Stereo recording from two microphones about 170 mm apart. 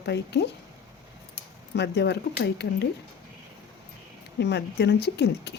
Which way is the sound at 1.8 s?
80° left.